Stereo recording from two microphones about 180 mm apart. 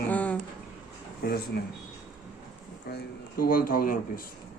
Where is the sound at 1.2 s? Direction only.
60° left (ahead or behind).